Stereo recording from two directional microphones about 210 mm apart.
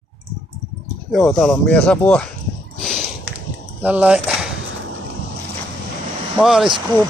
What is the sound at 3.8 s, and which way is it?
Speech, 5° right (ahead or behind).